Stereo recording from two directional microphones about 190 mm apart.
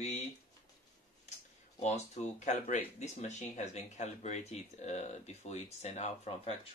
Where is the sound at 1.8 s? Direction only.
35° left (ahead or behind).